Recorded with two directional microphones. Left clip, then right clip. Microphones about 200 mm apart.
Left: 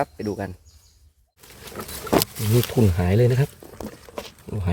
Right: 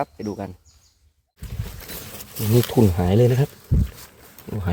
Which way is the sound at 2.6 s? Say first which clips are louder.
Right 3 dB; 10° right (ahead or behind).